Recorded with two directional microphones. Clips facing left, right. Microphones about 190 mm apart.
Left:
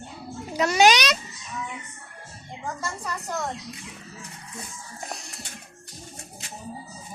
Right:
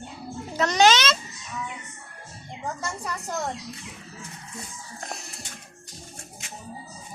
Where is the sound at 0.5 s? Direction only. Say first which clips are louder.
Left 1 dB; 10° left (ahead or behind).